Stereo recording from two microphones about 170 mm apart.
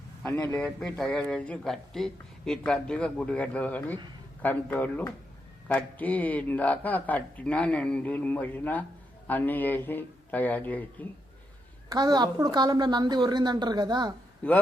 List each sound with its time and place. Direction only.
0.3 s a man's voice: 20° left (ahead or behind)
0.6 s a man's voice: 5° left (ahead or behind)
11.9 s a woman's voice: 25° right (ahead or behind)
14.4 s a man's voice: 10° left (ahead or behind)